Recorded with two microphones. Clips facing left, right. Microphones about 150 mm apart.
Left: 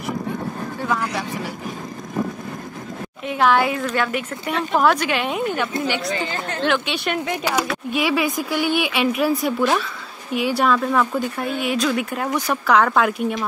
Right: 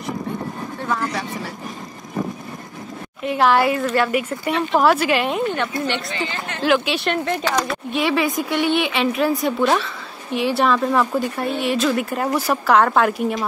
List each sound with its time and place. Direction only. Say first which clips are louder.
3.3 s a woman's voice: right 1 dB; centre (ahead or behind)
6.2 s speech: left 1 dB; 45° left (ahead or behind)
6.6 s a woman's voice: right 4 dB; centre (ahead or behind)
7.2 s a woman's voice: right 1 dB; 10° left (ahead or behind)